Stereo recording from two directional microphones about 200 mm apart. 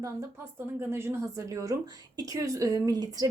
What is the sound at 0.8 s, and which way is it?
A woman's voice, 10° right (ahead or behind).